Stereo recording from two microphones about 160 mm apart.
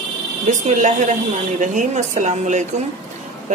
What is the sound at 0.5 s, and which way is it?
A woman's voice, 50° right (ahead or behind).